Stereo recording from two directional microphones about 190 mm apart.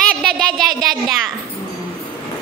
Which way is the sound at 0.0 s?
5° left (ahead or behind).